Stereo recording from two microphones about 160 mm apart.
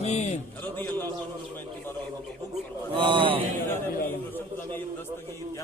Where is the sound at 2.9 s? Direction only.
30° right (ahead or behind).